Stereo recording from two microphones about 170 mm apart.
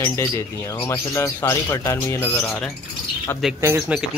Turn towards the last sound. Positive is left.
turn(degrees=-15)  # may be behind; listen again after turning